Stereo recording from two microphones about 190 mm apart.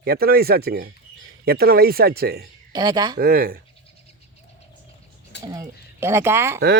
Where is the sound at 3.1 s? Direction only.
55° right (ahead or behind).